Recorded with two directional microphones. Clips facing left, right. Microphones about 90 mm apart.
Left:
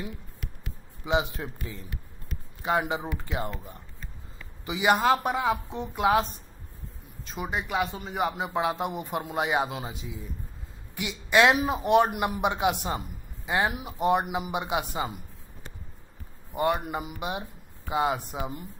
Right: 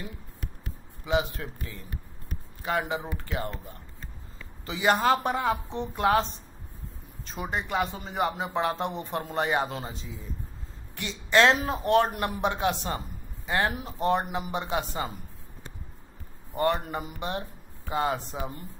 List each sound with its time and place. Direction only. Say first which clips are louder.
1.0 s a man's voice: even; 20° left (ahead or behind)
4.6 s speech: left 1 dB; 15° left (ahead or behind)
4.9 s speech: left 1 dB; 5° left (ahead or behind)
7.2 s speech: even; centre (ahead or behind)
16.5 s speech: even; 10° left (ahead or behind)